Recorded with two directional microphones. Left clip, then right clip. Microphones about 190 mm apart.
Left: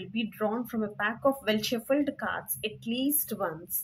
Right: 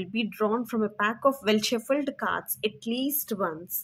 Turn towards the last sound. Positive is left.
turn(degrees=-25)  # may be behind; listen again after turning